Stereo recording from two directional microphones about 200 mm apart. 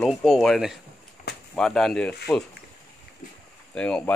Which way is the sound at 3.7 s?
5° left (ahead or behind).